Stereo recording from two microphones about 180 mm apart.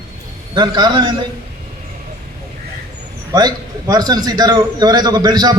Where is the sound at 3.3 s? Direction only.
20° right (ahead or behind).